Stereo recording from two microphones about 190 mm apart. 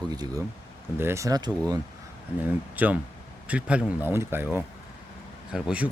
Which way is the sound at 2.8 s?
10° right (ahead or behind).